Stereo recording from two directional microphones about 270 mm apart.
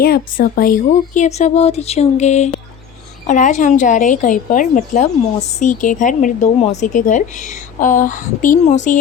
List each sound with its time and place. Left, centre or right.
0.0 s speech: left